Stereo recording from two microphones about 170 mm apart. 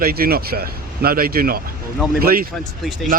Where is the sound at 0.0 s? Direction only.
60° right (ahead or behind).